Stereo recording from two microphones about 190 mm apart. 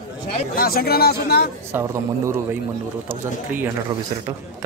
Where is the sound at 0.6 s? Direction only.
55° left (ahead or behind).